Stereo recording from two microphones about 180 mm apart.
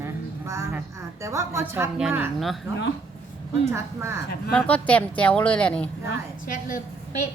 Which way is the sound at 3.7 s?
15° right (ahead or behind).